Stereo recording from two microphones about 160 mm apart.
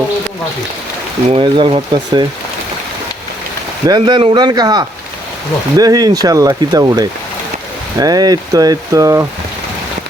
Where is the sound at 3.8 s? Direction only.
25° right (ahead or behind).